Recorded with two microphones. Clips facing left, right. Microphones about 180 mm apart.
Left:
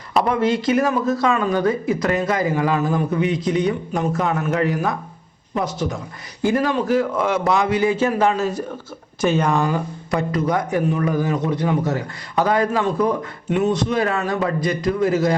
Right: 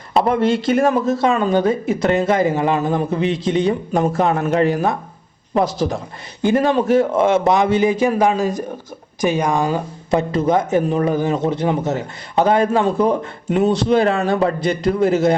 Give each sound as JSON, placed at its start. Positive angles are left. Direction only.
{"t": 0.3, "sound": "speech", "side_deg": -25}